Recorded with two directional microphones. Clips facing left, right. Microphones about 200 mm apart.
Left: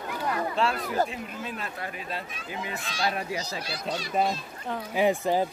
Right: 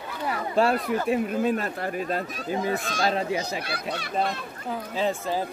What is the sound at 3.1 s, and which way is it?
Speech, 25° right (ahead or behind).